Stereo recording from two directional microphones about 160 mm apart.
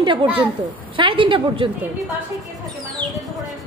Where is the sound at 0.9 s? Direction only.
30° right (ahead or behind).